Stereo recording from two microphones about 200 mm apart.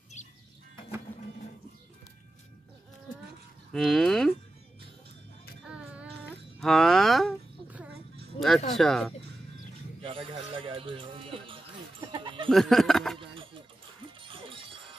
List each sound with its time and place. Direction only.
3.7 s speech: centre (ahead or behind)
5.7 s a sound: 5° right (ahead or behind)
8.7 s speech: centre (ahead or behind)
10.0 s speech: 25° right (ahead or behind)
12.4 s speech: centre (ahead or behind)
13.2 s a sound: 25° right (ahead or behind)
14.2 s music: 25° right (ahead or behind)